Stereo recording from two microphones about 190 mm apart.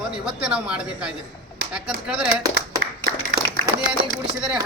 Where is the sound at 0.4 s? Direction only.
5° right (ahead or behind).